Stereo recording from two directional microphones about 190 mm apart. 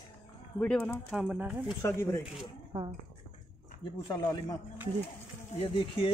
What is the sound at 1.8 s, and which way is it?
Speech, 15° left (ahead or behind).